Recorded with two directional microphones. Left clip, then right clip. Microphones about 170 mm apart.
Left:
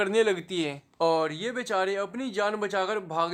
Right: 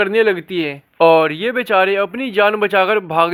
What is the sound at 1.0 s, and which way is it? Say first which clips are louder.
Speech: right 14 dB; 30° right (ahead or behind).